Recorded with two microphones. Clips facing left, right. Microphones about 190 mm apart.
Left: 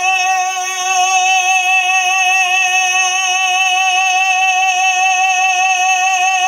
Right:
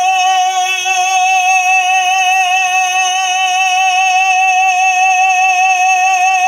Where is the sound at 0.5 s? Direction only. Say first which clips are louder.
Right 3 dB; 70° right (ahead or behind).